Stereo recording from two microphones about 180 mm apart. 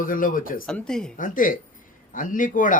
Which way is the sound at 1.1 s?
50° left (ahead or behind).